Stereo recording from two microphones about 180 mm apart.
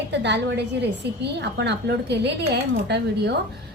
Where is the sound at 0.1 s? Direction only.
75° right (ahead or behind).